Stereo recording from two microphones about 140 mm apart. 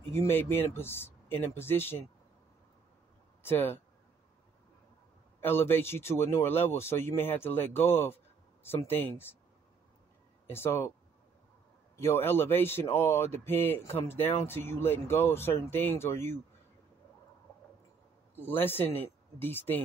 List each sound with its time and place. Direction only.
0.1 s speech: 15° left (ahead or behind)
3.4 s speech: 15° left (ahead or behind)
5.4 s speech: 15° left (ahead or behind)
10.5 s speech: 15° left (ahead or behind)
12.0 s speech: 15° left (ahead or behind)
18.4 s speech: 15° left (ahead or behind)